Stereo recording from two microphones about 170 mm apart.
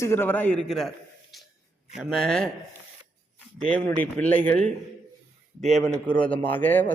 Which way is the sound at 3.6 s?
5° left (ahead or behind).